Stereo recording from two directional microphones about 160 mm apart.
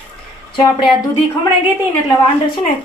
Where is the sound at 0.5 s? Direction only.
30° left (ahead or behind).